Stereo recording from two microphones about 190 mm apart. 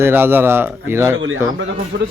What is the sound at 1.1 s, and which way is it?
Speech, 85° right.